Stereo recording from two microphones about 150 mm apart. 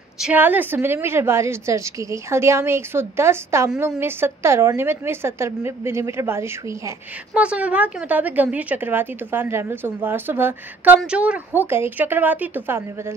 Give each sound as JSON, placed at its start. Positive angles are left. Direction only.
{"t": 0.2, "sound": "a woman's voice", "side_deg": -10}